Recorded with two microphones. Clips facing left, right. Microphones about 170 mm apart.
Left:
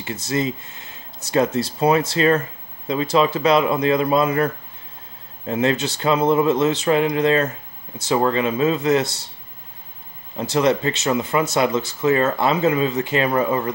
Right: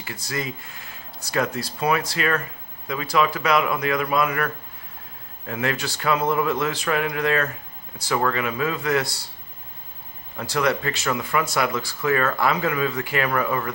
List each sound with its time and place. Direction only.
0.0 s speech: 25° left (ahead or behind)
5.5 s speech: 25° left (ahead or behind)
10.3 s speech: 20° left (ahead or behind)